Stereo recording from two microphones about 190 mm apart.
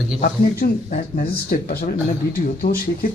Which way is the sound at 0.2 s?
40° left (ahead or behind).